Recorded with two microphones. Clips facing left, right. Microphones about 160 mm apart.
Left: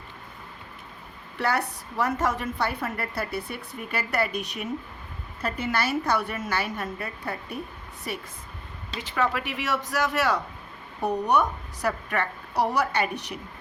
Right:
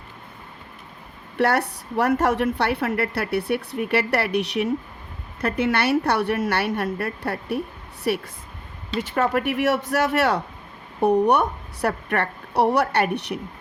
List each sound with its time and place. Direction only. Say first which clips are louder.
1.4 s a woman's voice: right 6 dB; 65° right (ahead or behind)
9.0 s a woman's voice: right 5 dB; 50° right (ahead or behind)